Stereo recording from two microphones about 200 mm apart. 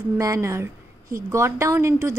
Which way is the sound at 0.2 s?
15° right (ahead or behind).